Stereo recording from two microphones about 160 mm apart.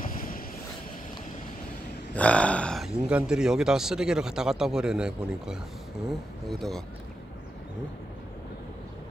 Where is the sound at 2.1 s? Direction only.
10° left (ahead or behind).